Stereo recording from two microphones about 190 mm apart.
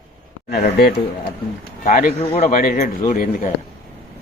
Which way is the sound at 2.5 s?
45° left (ahead or behind).